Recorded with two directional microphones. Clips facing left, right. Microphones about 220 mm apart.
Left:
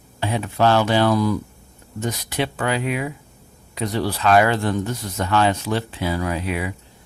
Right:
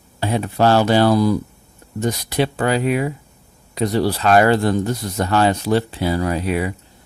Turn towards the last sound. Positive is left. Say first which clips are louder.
# right 4 dB
turn(degrees=-40)  # may be behind; listen again after turning